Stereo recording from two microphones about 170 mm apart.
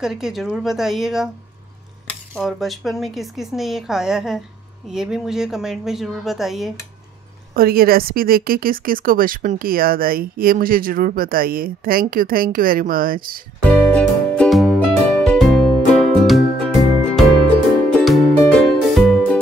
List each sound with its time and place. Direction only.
0.0 s a woman's voice: centre (ahead or behind)
2.3 s a woman's voice: centre (ahead or behind)
7.5 s speech: 60° right (ahead or behind)
13.8 s music: 5° left (ahead or behind)